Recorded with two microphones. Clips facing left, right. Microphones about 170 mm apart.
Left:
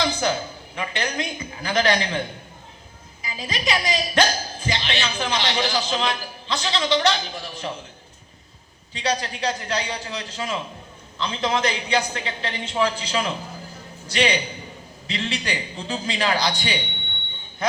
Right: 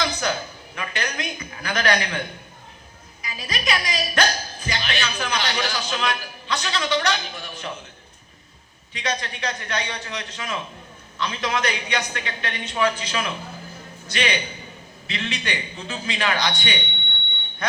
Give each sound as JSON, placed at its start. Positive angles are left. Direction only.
{"t": 0.0, "sound": "a sound", "side_deg": 30}
{"t": 0.8, "sound": "speech", "side_deg": 30}
{"t": 3.2, "sound": "speech", "side_deg": 25}
{"t": 8.9, "sound": "a man's voice", "side_deg": 30}